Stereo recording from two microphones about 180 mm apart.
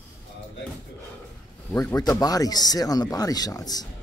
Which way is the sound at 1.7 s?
15° left (ahead or behind).